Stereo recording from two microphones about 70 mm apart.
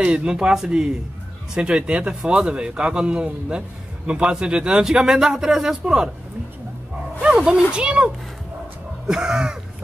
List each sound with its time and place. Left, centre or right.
0.0 s speech: centre
7.2 s speech: centre